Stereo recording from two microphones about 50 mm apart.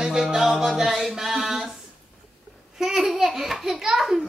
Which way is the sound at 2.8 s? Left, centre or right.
Centre.